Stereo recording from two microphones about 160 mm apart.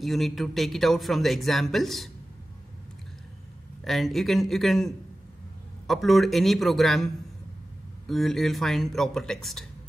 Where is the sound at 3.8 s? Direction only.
Centre (ahead or behind).